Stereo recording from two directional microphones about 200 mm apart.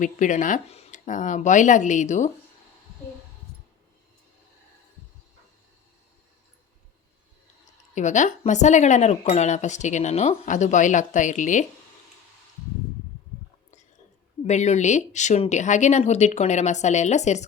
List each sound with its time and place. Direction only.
0.0 s speech: 40° left (ahead or behind)
7.9 s speech: 40° left (ahead or behind)
14.4 s speech: 35° left (ahead or behind)